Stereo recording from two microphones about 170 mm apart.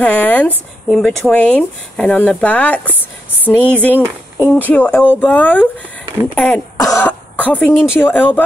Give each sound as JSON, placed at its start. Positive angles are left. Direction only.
{"t": 0.0, "sound": "speech", "side_deg": 10}
{"t": 6.8, "sound": "cough", "side_deg": 20}
{"t": 8.0, "sound": "speech", "side_deg": 10}